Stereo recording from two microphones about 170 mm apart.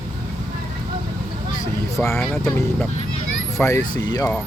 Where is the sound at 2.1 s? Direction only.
5° left (ahead or behind).